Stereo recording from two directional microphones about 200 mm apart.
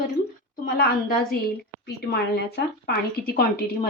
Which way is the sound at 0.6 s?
50° left (ahead or behind).